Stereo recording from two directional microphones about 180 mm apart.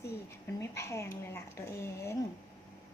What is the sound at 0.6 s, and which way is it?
Speech, 15° left (ahead or behind).